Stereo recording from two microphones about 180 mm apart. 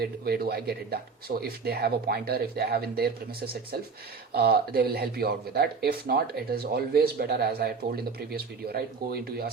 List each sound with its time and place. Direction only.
0.0 s a man's voice: 60° right (ahead or behind)